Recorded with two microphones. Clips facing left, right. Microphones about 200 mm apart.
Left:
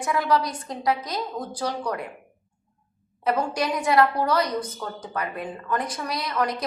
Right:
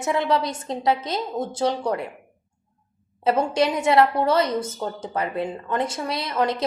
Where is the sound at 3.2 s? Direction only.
25° right (ahead or behind).